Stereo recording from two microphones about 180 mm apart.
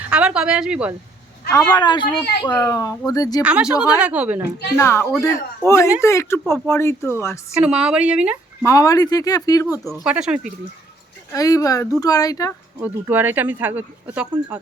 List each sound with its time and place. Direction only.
0.1 s speech: 5° right (ahead or behind)
1.7 s speech: 25° left (ahead or behind)
2.0 s speech: 60° left (ahead or behind)
2.5 s a man's voice: 15° left (ahead or behind)
3.4 s speech: 5° right (ahead or behind)
4.8 s a man's voice: 15° left (ahead or behind)
7.6 s speech: 5° right (ahead or behind)
8.6 s speech: 20° left (ahead or behind)
9.8 s speech: centre (ahead or behind)
11.3 s speech: 20° left (ahead or behind)
12.8 s speech: 10° right (ahead or behind)